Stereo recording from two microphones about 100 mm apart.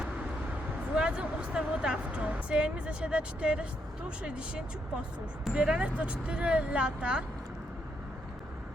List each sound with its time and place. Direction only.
0.9 s a woman's voice: 10° right (ahead or behind)